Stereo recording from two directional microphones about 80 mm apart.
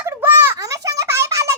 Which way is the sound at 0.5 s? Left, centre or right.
Right.